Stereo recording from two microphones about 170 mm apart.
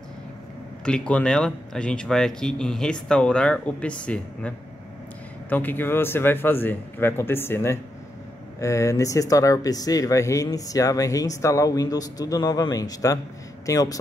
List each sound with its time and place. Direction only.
0.8 s speech: 5° left (ahead or behind)